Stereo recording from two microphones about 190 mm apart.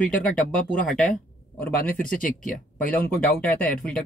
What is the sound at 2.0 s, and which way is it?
Speech, 45° left (ahead or behind).